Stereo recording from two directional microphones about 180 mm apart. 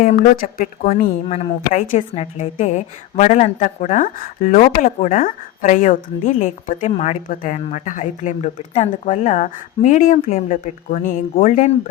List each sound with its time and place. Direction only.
0.0 s a woman's voice: 45° left (ahead or behind)